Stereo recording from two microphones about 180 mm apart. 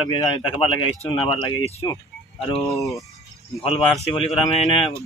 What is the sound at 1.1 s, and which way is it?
Speech, 30° left (ahead or behind).